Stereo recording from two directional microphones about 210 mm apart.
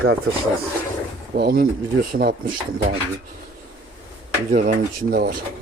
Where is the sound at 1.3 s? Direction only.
45° right (ahead or behind).